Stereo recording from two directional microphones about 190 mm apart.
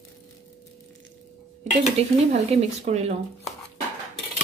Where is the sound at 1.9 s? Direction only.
35° right (ahead or behind).